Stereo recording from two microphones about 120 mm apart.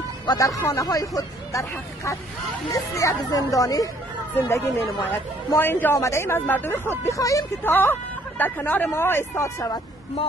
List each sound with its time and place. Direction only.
0.3 s speech: 30° left (ahead or behind)